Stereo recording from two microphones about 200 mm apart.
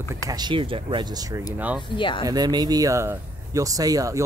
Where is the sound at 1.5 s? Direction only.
10° right (ahead or behind).